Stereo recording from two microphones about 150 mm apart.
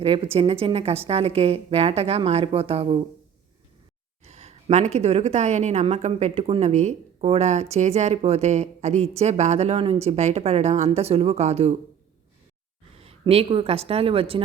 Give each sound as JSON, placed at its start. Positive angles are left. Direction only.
{"t": 0.0, "sound": "a woman's voice", "side_deg": -40}
{"t": 4.2, "sound": "a woman's voice", "side_deg": -45}
{"t": 13.0, "sound": "a woman's voice", "side_deg": -40}